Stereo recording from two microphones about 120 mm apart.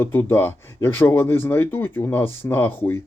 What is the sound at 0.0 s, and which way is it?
Speech, 20° left (ahead or behind).